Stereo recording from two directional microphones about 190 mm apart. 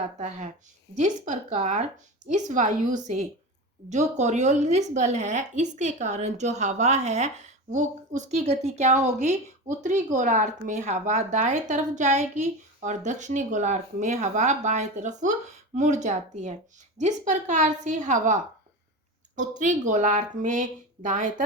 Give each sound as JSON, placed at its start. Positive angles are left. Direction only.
{"t": 0.2, "sound": "a woman's voice", "side_deg": -35}
{"t": 19.4, "sound": "a woman's voice", "side_deg": -40}